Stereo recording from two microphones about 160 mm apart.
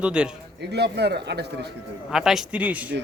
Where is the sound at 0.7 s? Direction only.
90° right.